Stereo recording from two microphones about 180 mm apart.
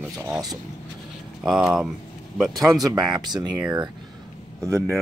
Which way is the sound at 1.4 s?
5° right (ahead or behind).